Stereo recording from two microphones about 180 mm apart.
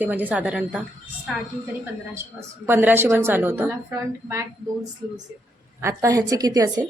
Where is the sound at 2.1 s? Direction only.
15° right (ahead or behind).